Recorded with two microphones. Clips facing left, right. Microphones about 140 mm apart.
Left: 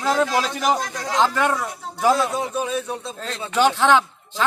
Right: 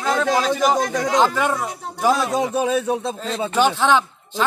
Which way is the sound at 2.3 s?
90° right.